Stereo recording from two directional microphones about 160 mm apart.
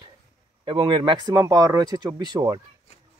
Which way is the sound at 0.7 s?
30° right (ahead or behind).